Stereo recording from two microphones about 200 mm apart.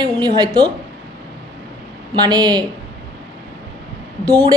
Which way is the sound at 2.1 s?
20° right (ahead or behind).